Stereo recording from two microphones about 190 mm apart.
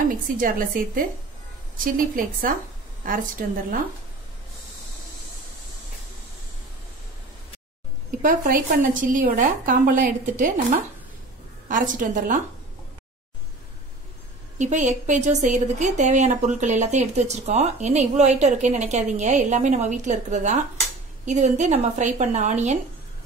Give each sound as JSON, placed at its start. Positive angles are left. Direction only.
{"t": 0.1, "sound": "a woman's voice", "side_deg": -45}
{"t": 8.2, "sound": "a woman's voice", "side_deg": -45}
{"t": 14.6, "sound": "a woman's voice", "side_deg": -40}